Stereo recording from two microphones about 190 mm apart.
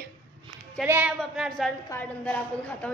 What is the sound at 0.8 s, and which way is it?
A woman's voice, 10° right (ahead or behind).